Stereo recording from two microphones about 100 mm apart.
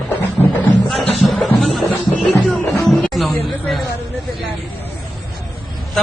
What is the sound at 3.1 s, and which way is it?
Chatter, centre (ahead or behind).